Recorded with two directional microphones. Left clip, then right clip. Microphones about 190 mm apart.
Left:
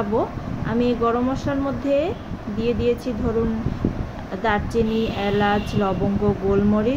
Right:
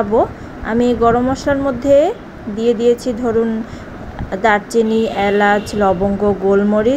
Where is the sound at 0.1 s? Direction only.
30° right (ahead or behind).